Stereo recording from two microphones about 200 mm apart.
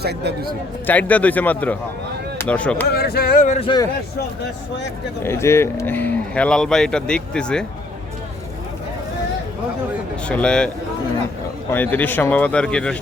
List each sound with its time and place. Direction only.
0.0 s speech: 55° right (ahead or behind)
0.9 s cattle: 10° left (ahead or behind)
2.4 s speech: 5° left (ahead or behind)
2.9 s a sound: 50° left (ahead or behind)
5.2 s cattle: 15° left (ahead or behind)
10.2 s a man's voice: 5° left (ahead or behind)
11.7 s cattle: 10° left (ahead or behind)